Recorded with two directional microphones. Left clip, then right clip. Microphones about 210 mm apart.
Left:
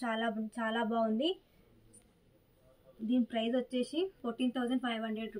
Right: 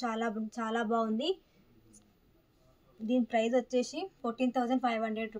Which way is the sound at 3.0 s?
50° right (ahead or behind).